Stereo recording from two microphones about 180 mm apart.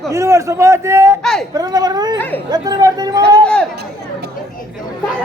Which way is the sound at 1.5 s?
20° right (ahead or behind).